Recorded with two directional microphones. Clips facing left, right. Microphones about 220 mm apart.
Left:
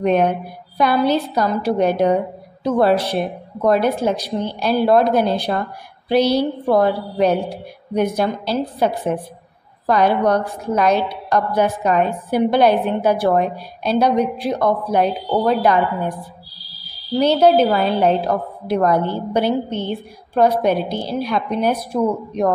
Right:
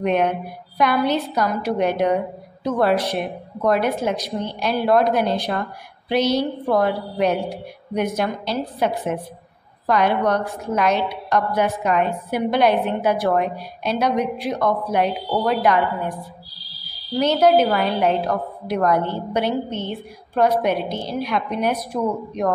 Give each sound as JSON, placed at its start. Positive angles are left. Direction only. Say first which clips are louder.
{"t": 0.0, "sound": "a woman's voice", "louder": "left 3 dB", "side_deg": 35}
{"t": 17.2, "sound": "a woman's voice", "louder": "left 2 dB", "side_deg": 30}
{"t": 17.9, "sound": "a woman's voice", "louder": "left 3 dB", "side_deg": 0}
{"t": 18.7, "sound": "a woman's voice", "louder": "left 3 dB", "side_deg": 30}